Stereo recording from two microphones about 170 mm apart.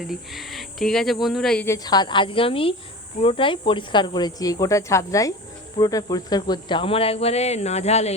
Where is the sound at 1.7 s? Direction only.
20° left (ahead or behind).